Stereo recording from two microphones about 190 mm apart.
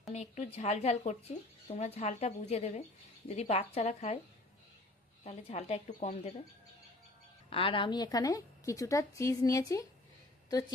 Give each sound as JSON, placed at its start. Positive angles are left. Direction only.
{"t": 0.1, "sound": "speech", "side_deg": 35}
{"t": 5.2, "sound": "speech", "side_deg": 35}
{"t": 7.5, "sound": "a woman's voice", "side_deg": 25}